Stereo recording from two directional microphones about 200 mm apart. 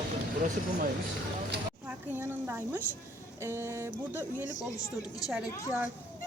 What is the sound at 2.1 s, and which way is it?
A woman's voice, 10° right (ahead or behind).